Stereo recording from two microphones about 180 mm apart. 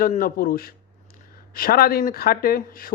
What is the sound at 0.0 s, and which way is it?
A man's voice, 55° left (ahead or behind).